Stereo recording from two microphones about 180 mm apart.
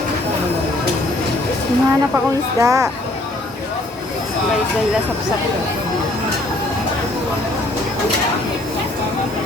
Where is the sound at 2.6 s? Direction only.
15° right (ahead or behind).